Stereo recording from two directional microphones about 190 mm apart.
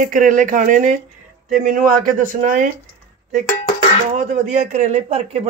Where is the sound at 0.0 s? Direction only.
45° right (ahead or behind).